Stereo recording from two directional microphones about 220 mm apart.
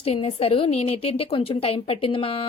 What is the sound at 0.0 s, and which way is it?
A woman's voice, 25° left (ahead or behind).